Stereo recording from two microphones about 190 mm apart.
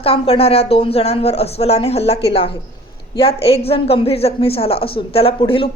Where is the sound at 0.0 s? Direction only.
30° left (ahead or behind).